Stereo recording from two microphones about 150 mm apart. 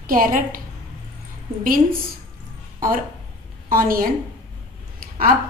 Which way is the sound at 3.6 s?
75° right (ahead or behind).